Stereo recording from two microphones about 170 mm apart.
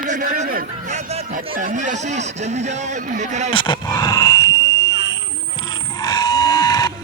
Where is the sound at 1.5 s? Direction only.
50° right (ahead or behind).